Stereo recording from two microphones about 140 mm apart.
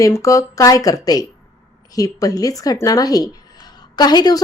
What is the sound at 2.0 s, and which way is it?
A woman's voice, 25° left (ahead or behind).